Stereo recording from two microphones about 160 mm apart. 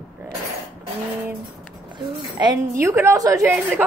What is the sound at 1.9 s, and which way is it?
A woman's voice, 25° right (ahead or behind).